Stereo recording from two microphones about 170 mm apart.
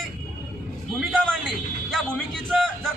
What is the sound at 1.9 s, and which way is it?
Speech, 5° left (ahead or behind).